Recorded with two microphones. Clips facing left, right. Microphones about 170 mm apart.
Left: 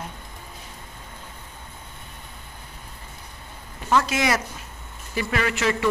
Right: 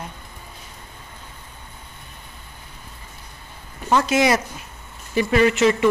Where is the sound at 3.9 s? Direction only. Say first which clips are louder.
Right 4 dB; 20° right (ahead or behind).